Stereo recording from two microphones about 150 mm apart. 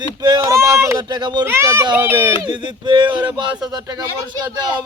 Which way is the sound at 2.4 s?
30° right (ahead or behind).